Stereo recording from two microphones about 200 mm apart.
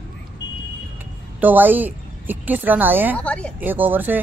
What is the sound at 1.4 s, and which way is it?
Speech, 10° right (ahead or behind).